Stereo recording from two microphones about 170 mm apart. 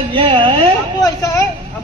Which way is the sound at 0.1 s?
30° right (ahead or behind).